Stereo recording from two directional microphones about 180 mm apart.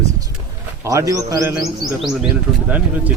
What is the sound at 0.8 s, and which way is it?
Speech, 20° right (ahead or behind).